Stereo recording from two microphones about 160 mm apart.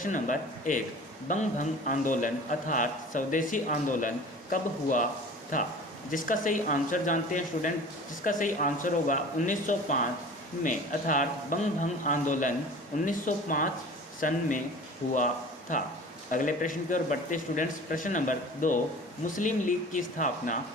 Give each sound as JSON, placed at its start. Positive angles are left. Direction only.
{"t": 0.0, "sound": "a man's voice", "side_deg": 55}
{"t": 15.7, "sound": "a man's voice", "side_deg": 55}